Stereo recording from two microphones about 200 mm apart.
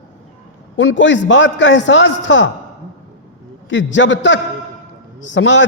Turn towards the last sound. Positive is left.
turn(degrees=65)  # may be behind; listen again after turning